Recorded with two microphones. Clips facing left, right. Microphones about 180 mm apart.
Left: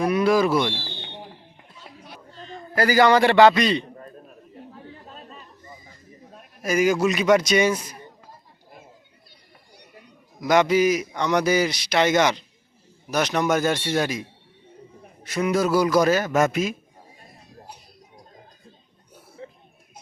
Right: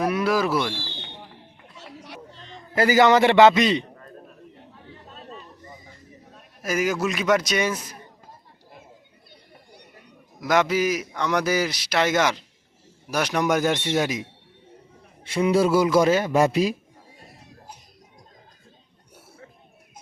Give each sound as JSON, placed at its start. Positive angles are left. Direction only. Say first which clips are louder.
{"t": 0.0, "sound": "speech", "louder": "left 3 dB", "side_deg": -5}
{"t": 1.7, "sound": "a sound", "louder": "right 4 dB", "side_deg": -85}
{"t": 2.7, "sound": "a man's voice", "louder": "even", "side_deg": -20}
{"t": 6.6, "sound": "a man's voice", "louder": "left 4 dB", "side_deg": 0}
{"t": 10.4, "sound": "a man's voice", "louder": "left 3 dB", "side_deg": 0}
{"t": 15.2, "sound": "a man's voice", "louder": "right 2 dB", "side_deg": -30}